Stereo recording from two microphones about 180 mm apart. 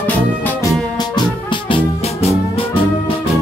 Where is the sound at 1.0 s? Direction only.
25° left (ahead or behind).